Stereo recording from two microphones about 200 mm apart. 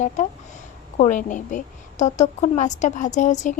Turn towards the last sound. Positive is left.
turn(degrees=35)  # may be behind; listen again after turning